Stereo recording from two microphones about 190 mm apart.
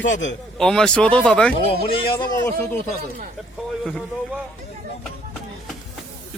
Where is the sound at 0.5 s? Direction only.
5° left (ahead or behind).